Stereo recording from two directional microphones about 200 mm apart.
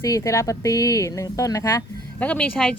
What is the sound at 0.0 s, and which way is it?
Speech, 15° left (ahead or behind).